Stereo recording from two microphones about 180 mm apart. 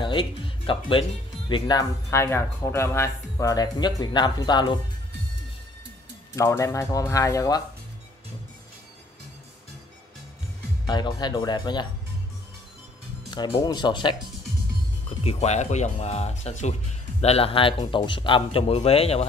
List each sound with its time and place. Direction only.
0.0 s speech: 30° left (ahead or behind)
6.3 s speech: 15° left (ahead or behind)
10.9 s speech: 25° left (ahead or behind)
13.3 s speech: 25° left (ahead or behind)
15.0 s speech: 35° left (ahead or behind)